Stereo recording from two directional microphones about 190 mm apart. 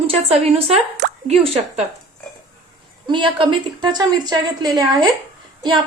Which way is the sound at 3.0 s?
25° right (ahead or behind).